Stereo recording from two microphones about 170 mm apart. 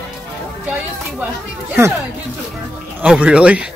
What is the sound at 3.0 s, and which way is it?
Speech, 5° right (ahead or behind).